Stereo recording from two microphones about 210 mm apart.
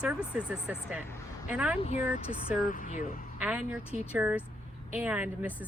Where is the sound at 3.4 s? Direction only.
5° right (ahead or behind).